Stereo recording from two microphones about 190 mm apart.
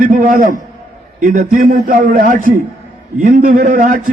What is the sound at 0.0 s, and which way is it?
A man's voice, 45° right (ahead or behind).